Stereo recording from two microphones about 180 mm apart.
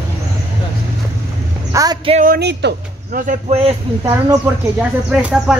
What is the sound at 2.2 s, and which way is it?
Speech, 65° right (ahead or behind).